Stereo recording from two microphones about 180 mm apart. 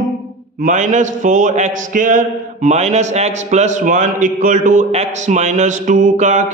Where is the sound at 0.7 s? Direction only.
40° right (ahead or behind).